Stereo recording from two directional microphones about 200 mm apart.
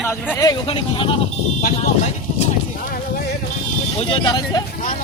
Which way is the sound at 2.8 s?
45° left (ahead or behind).